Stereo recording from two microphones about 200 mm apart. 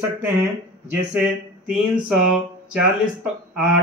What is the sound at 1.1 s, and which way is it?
Speech, 5° right (ahead or behind).